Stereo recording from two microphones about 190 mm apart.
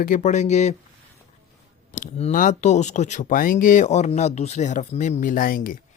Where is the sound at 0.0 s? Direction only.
40° left (ahead or behind).